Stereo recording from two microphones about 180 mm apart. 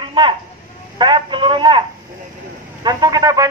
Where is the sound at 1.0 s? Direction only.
25° right (ahead or behind).